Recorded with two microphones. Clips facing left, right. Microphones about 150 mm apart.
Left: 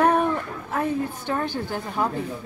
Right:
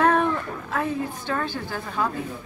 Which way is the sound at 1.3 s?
15° left (ahead or behind).